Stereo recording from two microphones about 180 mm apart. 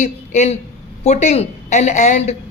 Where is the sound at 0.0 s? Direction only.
40° left (ahead or behind).